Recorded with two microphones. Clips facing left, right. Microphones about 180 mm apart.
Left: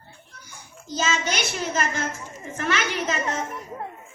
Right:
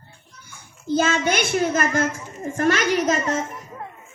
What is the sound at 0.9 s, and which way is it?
A child's voice, 55° right (ahead or behind).